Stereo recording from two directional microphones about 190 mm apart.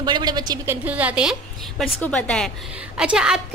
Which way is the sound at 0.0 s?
20° right (ahead or behind).